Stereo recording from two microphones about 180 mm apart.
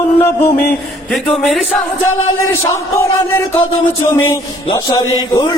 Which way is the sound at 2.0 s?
15° left (ahead or behind).